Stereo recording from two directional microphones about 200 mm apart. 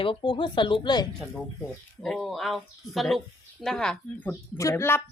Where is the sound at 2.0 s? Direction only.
Centre (ahead or behind).